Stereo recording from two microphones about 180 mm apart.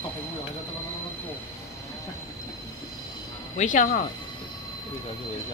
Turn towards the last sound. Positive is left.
turn(degrees=45)  # may be behind; listen again after turning